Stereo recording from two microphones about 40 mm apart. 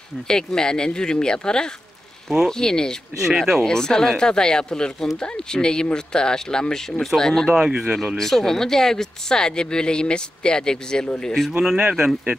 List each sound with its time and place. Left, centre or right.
0.3 s speech: centre
3.3 s speech: centre
3.6 s speech: centre
7.5 s speech: centre
8.2 s speech: centre
11.8 s speech: centre